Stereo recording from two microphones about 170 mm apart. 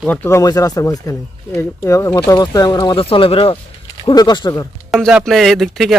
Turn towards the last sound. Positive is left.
turn(degrees=0)  # may be behind; listen again after turning